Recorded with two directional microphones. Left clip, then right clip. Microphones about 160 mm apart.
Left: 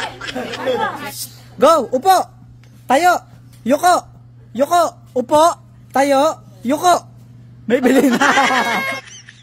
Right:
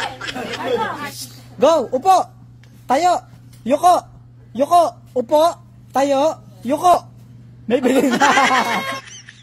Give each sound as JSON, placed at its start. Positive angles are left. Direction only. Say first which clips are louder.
{"t": 0.0, "sound": "chatter", "louder": "left 1 dB", "side_deg": 0}
{"t": 1.1, "sound": "a woman's voice", "louder": "left 2 dB", "side_deg": 30}
{"t": 8.1, "sound": "a sound", "louder": "even", "side_deg": 0}